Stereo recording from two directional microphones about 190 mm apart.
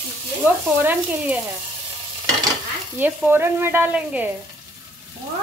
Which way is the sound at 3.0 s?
10° right (ahead or behind).